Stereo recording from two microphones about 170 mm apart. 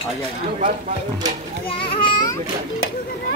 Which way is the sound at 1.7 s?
30° left (ahead or behind).